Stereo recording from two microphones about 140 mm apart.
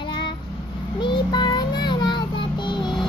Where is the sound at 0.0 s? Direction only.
35° left (ahead or behind).